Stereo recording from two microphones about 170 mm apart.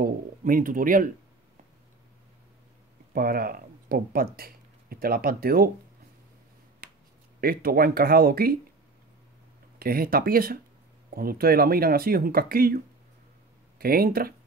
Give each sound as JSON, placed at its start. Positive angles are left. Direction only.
{"t": 0.0, "sound": "speech", "side_deg": -55}
{"t": 3.1, "sound": "speech", "side_deg": -60}
{"t": 7.3, "sound": "speech", "side_deg": -60}
{"t": 9.8, "sound": "speech", "side_deg": -60}